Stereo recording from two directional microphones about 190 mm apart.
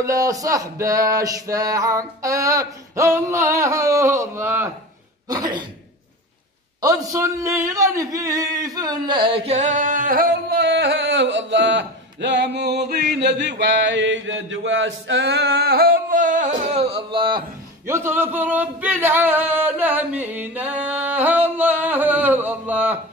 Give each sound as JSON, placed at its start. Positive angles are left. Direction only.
{"t": 0.0, "sound": "a sound", "side_deg": -15}
{"t": 5.3, "sound": "speech", "side_deg": -20}
{"t": 6.8, "sound": "speech", "side_deg": -15}
{"t": 17.8, "sound": "singing", "side_deg": -15}